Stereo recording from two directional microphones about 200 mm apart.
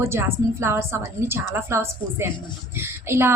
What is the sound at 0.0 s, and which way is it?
A woman's voice, 10° right (ahead or behind).